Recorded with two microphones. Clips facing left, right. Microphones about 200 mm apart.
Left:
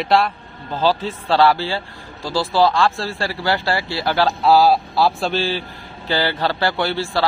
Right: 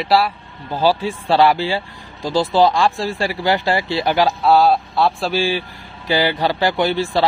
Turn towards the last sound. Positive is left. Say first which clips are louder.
# right 3 dB
turn(degrees=-15)  # may be behind; listen again after turning